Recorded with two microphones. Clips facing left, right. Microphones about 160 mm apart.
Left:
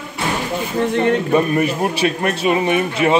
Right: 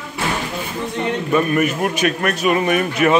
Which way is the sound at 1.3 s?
30° left (ahead or behind).